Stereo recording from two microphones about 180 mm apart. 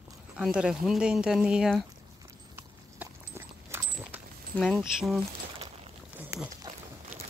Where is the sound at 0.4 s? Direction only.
5° right (ahead or behind).